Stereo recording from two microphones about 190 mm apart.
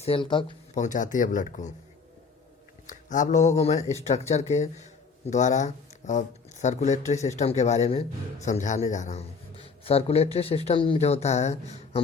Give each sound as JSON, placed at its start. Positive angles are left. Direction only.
{"t": 0.0, "sound": "speech", "side_deg": 25}
{"t": 0.7, "sound": "speech", "side_deg": 40}
{"t": 2.8, "sound": "speech", "side_deg": 40}